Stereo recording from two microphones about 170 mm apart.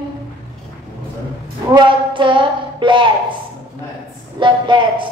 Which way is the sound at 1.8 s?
30° right (ahead or behind).